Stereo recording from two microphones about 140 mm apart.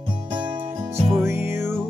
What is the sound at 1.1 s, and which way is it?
Music, 15° right (ahead or behind).